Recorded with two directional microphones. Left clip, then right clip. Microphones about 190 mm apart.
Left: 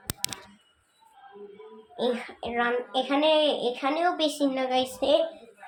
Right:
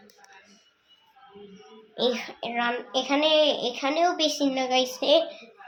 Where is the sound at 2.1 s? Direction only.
10° right (ahead or behind).